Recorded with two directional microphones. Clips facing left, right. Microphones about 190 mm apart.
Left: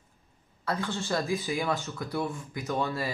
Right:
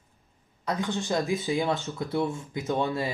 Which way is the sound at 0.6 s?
15° right (ahead or behind).